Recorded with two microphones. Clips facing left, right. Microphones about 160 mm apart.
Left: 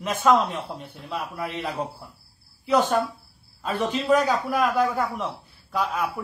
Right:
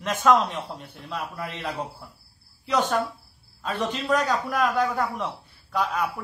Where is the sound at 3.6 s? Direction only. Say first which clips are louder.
Left 2 dB; 10° left (ahead or behind).